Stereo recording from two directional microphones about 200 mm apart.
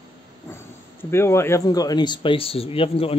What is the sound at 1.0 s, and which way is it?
Speech, 10° left (ahead or behind).